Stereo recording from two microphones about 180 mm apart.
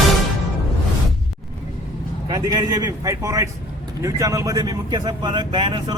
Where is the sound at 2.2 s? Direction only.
20° right (ahead or behind).